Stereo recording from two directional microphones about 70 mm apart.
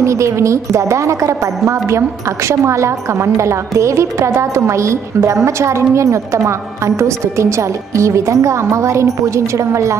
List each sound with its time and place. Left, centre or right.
0.0 s a woman's voice: right